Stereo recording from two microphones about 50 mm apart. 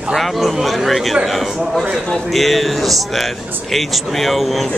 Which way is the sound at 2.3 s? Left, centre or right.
Centre.